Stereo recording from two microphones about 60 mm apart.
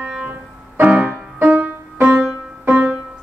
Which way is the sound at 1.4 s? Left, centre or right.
Right.